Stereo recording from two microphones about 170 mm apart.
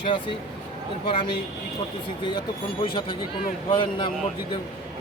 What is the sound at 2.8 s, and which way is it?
Speech, 30° left (ahead or behind).